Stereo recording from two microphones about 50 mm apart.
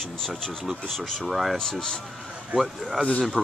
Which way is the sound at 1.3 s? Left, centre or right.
Centre.